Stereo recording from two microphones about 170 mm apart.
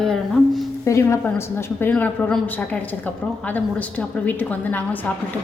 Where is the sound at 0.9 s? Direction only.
15° left (ahead or behind).